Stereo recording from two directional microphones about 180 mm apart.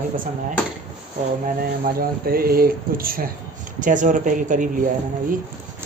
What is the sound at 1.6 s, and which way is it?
Speech, 55° right (ahead or behind).